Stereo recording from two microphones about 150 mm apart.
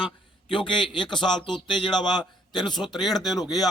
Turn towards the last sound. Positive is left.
turn(degrees=25)  # may be behind; listen again after turning